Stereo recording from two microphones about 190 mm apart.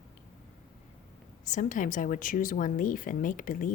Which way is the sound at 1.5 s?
40° left (ahead or behind).